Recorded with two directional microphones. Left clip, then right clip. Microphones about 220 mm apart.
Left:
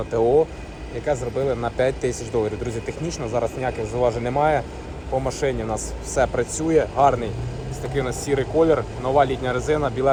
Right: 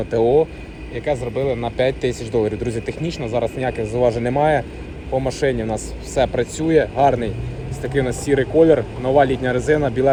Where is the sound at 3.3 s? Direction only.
40° left (ahead or behind).